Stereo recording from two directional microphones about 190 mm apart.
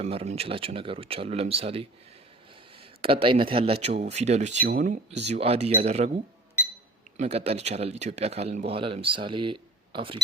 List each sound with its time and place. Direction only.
0.0 s speech: 35° right (ahead or behind)
3.0 s speech: 30° right (ahead or behind); by 5.2 s 45° right (ahead or behind)
5.3 s speech: 30° right (ahead or behind)
7.2 s speech: 35° right (ahead or behind)